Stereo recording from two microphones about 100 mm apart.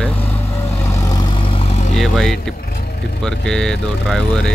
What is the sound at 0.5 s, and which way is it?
Vehicle, 25° left (ahead or behind).